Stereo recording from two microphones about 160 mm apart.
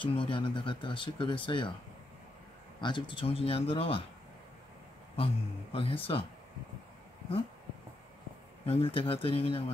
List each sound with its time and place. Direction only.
0.0 s speech: 30° left (ahead or behind)
2.8 s speech: 30° left (ahead or behind)
5.1 s speech: 35° left (ahead or behind)
8.6 s speech: 35° left (ahead or behind)